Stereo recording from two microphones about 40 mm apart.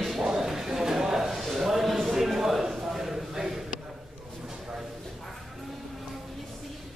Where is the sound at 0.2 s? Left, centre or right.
Centre.